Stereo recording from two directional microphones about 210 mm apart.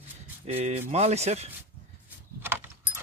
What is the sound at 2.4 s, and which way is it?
Vehicle, 10° right (ahead or behind).